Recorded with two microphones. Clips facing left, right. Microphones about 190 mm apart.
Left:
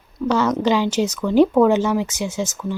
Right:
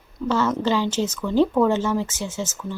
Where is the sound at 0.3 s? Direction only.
15° left (ahead or behind).